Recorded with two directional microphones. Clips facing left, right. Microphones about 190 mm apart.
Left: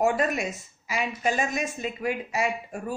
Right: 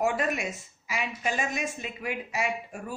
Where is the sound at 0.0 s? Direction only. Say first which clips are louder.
Left 3 dB; 40° left (ahead or behind).